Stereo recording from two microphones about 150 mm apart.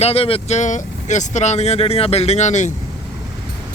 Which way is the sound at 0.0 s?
40° left (ahead or behind).